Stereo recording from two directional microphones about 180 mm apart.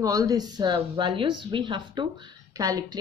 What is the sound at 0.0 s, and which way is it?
Speech, 20° right (ahead or behind).